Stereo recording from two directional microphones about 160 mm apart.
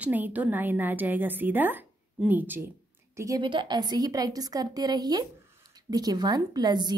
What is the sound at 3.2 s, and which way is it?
A woman's voice, 25° right (ahead or behind).